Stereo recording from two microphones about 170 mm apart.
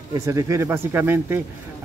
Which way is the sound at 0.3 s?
20° right (ahead or behind).